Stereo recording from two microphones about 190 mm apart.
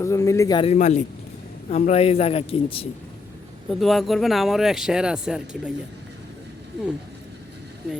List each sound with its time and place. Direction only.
0.0 s speech: 15° left (ahead or behind)
0.6 s speech: 35° left (ahead or behind)
3.7 s speech: centre (ahead or behind)